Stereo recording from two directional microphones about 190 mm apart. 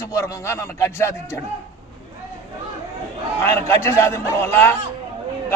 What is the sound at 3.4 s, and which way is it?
A man's voice, 15° left (ahead or behind).